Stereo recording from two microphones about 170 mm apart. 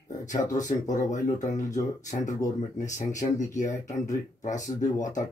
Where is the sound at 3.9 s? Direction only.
45° left (ahead or behind).